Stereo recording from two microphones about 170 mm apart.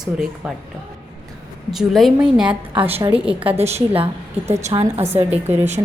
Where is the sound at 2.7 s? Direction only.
35° right (ahead or behind).